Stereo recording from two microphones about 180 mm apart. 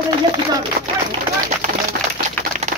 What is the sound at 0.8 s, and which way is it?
Speech, 55° right (ahead or behind).